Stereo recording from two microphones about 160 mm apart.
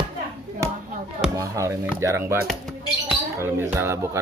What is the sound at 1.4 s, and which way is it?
Speech, 20° right (ahead or behind).